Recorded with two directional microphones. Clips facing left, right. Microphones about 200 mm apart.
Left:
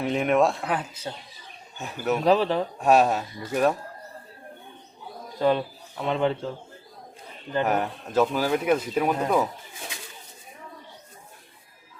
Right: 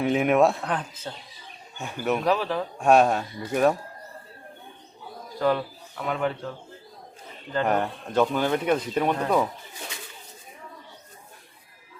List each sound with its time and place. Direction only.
0.0 s speech: centre (ahead or behind)
2.2 s speech: 30° left (ahead or behind)
2.7 s speech: centre (ahead or behind)
5.4 s speech: 20° left (ahead or behind)
7.6 s speech: 5° left (ahead or behind)